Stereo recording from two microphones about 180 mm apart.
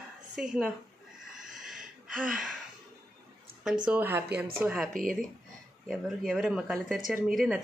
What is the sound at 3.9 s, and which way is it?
Speech, 10° right (ahead or behind).